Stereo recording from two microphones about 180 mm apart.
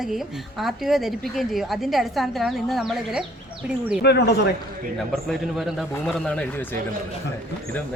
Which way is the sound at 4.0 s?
65° left (ahead or behind).